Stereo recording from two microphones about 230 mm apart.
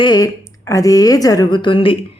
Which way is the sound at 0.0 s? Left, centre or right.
Centre.